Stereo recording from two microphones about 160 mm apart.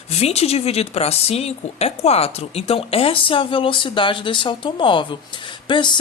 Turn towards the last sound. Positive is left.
turn(degrees=30)  # may be behind; listen again after turning